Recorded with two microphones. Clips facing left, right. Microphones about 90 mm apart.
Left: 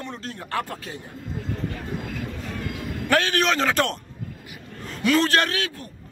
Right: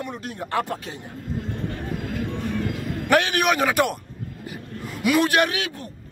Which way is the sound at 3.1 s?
15° right (ahead or behind).